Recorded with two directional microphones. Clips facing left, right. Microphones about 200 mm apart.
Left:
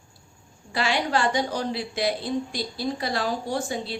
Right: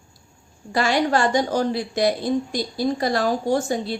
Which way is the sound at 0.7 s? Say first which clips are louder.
Right 5 dB; 45° right (ahead or behind).